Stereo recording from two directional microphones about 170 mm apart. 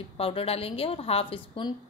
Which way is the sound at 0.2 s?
35° left (ahead or behind).